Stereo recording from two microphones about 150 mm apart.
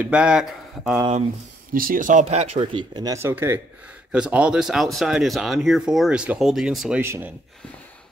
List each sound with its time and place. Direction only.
0.0 s speech: 5° right (ahead or behind)
1.7 s speech: 70° right (ahead or behind); by 7.0 s 5° right (ahead or behind)
7.0 s speech: 15° right (ahead or behind)